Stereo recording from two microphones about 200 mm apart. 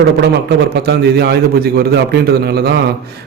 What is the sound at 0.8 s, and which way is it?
A man's voice, 50° right (ahead or behind).